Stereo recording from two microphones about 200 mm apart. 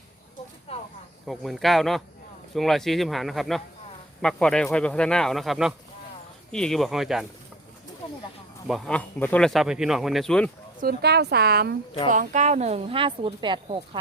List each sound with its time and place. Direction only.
1.3 s speech: centre (ahead or behind)
8.6 s speech: 5° left (ahead or behind)
10.8 s speech: 50° right (ahead or behind)
12.1 s speech: 40° right (ahead or behind)